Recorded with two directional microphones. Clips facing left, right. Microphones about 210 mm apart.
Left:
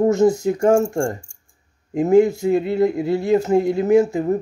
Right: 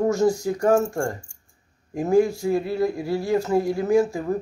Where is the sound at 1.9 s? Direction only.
20° left (ahead or behind).